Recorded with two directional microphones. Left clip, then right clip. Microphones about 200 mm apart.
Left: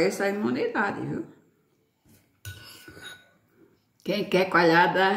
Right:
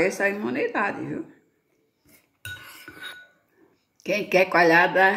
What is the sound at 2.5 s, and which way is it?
Music, 35° right (ahead or behind).